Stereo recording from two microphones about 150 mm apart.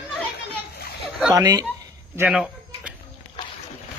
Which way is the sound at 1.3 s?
25° right (ahead or behind).